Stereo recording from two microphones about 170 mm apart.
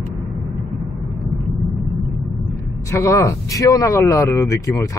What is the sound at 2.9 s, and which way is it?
Speech, 15° left (ahead or behind).